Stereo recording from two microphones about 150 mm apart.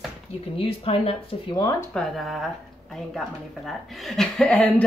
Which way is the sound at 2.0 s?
Centre (ahead or behind).